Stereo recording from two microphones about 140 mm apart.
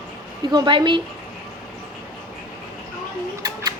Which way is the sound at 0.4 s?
30° right (ahead or behind).